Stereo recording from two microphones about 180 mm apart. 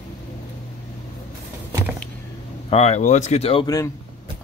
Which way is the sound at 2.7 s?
35° left (ahead or behind).